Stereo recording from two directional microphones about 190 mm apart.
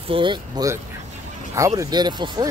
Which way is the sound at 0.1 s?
25° right (ahead or behind).